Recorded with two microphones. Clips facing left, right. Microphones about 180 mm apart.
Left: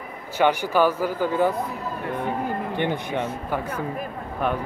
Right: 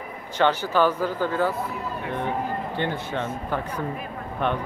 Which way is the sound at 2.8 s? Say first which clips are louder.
Left 3 dB; 15° left (ahead or behind).